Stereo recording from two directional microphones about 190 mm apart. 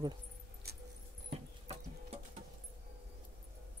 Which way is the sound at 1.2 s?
35° right (ahead or behind).